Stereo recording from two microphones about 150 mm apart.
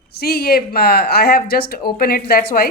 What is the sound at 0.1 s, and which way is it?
Speech, 90° left.